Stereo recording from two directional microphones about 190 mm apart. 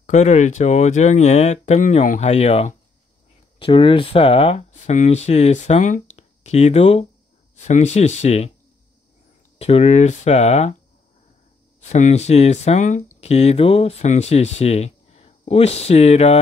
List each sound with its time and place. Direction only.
0.0 s speech: 35° left (ahead or behind)
9.6 s speech: 35° left (ahead or behind)
11.8 s speech: 35° left (ahead or behind)